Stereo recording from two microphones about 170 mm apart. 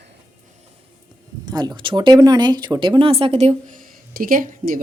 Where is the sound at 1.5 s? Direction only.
25° right (ahead or behind).